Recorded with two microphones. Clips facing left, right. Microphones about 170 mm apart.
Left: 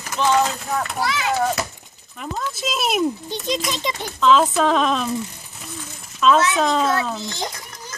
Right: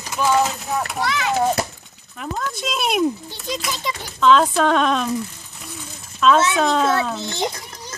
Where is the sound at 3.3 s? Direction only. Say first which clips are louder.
Left 3 dB; 20° left (ahead or behind).